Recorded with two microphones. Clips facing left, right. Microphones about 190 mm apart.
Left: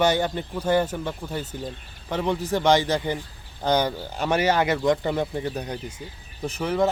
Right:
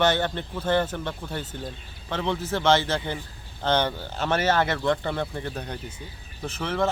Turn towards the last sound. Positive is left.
turn(degrees=10)  # may be behind; listen again after turning